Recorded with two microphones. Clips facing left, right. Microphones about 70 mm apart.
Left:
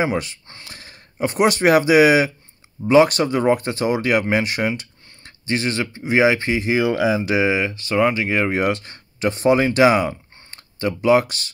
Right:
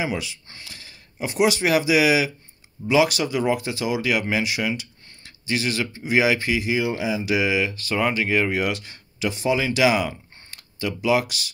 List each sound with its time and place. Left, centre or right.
0.0 s speech: left
6.7 s speech: left
7.2 s speech: left
8.2 s speech: centre
8.5 s speech: left